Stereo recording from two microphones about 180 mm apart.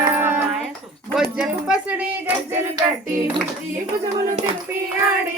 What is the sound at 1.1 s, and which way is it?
Speech, 5° right (ahead or behind).